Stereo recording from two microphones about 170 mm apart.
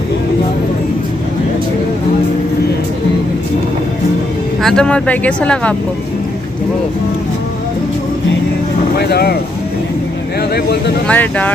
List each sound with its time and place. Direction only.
4.6 s speech: 5° left (ahead or behind)
8.9 s speech: 70° left (ahead or behind)
11.1 s speech: 10° left (ahead or behind)